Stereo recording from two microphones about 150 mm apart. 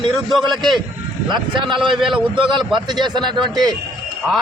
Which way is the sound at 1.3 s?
35° right (ahead or behind).